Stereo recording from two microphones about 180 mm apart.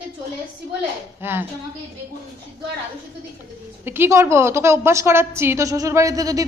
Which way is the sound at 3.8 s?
10° right (ahead or behind).